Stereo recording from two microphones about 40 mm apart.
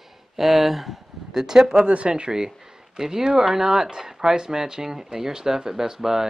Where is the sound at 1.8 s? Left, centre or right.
Right; by 6.2 s centre.